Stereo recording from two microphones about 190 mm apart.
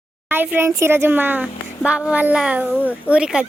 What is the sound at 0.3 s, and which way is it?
Speech, 10° right (ahead or behind).